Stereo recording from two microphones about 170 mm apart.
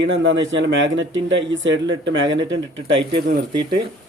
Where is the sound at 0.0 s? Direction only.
90° right.